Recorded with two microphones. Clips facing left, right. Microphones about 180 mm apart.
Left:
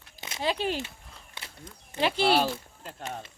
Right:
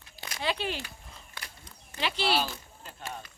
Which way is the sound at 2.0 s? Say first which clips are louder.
Left 5 dB; 50° left (ahead or behind).